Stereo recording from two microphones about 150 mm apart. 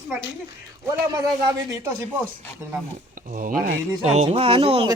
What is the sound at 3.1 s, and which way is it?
Speech, 60° right (ahead or behind).